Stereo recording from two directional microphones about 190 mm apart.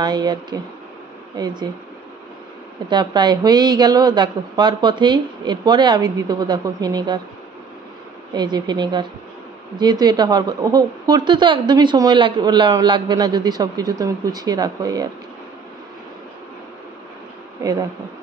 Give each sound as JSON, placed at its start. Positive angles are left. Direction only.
{"t": 0.0, "sound": "a woman's voice", "side_deg": -20}
{"t": 2.9, "sound": "a woman's voice", "side_deg": -25}
{"t": 8.3, "sound": "a woman's voice", "side_deg": -20}